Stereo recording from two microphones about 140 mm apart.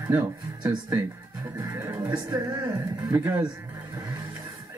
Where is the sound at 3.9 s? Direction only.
30° right (ahead or behind).